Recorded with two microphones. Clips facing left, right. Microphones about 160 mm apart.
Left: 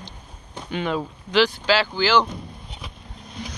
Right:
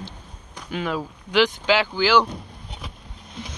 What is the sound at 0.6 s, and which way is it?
Speech, 5° right (ahead or behind).